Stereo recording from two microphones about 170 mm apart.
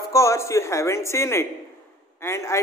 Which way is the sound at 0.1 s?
20° left (ahead or behind).